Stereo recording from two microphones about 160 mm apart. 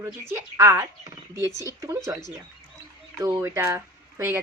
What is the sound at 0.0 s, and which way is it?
Speech, 15° right (ahead or behind).